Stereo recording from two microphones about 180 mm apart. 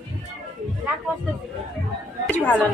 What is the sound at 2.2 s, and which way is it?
Speech, 10° left (ahead or behind).